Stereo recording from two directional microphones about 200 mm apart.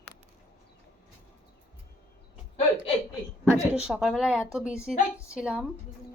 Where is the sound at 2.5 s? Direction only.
25° left (ahead or behind).